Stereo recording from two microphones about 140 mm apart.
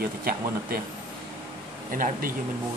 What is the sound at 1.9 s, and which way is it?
Speech, 85° right.